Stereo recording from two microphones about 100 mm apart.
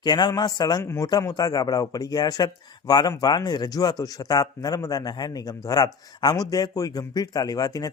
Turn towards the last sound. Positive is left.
turn(degrees=40)  # may be behind; listen again after turning